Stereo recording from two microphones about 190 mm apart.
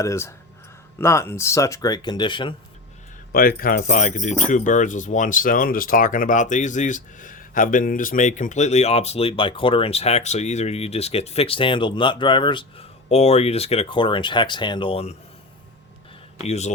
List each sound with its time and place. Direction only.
0.0 s speech: 15° left (ahead or behind)
3.3 s speech: 50° left (ahead or behind); by 15.1 s 30° left (ahead or behind)
16.4 s speech: 35° left (ahead or behind)